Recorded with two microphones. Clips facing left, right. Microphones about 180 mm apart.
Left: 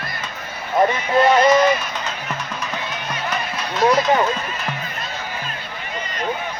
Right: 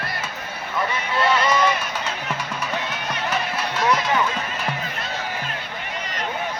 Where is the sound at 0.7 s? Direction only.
45° left (ahead or behind).